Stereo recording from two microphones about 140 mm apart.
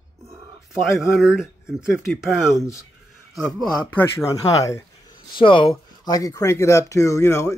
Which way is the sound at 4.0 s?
20° left (ahead or behind).